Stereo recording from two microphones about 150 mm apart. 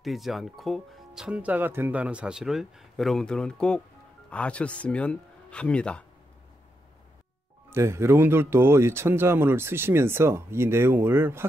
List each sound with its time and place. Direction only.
0.0 s speech: centre (ahead or behind)
7.7 s speech: 15° right (ahead or behind)